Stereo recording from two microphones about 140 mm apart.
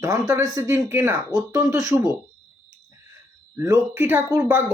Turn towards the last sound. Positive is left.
turn(degrees=-15)  # may be behind; listen again after turning